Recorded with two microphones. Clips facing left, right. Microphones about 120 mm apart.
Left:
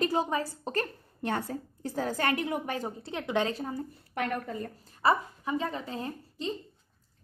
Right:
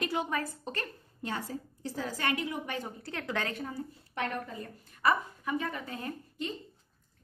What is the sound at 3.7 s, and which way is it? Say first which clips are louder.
A woman's voice: left 3 dB; 45° left (ahead or behind).